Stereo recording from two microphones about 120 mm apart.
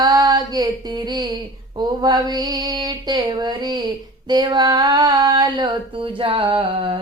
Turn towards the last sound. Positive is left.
turn(degrees=-45)  # may be behind; listen again after turning